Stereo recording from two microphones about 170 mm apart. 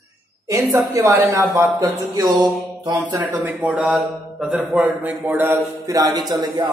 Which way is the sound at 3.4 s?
10° right (ahead or behind).